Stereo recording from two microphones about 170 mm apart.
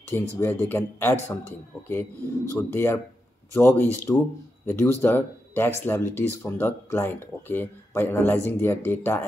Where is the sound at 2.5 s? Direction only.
15° left (ahead or behind).